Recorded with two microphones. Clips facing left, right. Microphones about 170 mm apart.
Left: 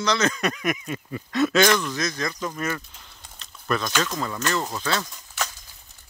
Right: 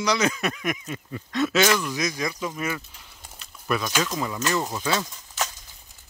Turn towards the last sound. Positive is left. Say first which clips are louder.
# right 1 dB
turn(degrees=-15)  # may be behind; listen again after turning